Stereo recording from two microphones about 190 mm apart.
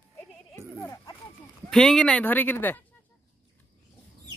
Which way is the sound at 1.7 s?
Centre (ahead or behind).